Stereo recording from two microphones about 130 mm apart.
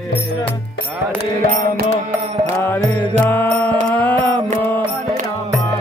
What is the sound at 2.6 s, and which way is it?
Music, 15° left (ahead or behind).